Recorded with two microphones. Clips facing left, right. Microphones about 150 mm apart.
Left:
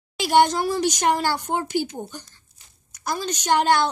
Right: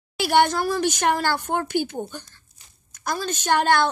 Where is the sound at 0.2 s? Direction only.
15° left (ahead or behind).